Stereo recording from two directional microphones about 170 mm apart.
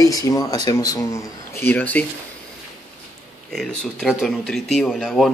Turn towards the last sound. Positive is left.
turn(degrees=0)  # may be behind; listen again after turning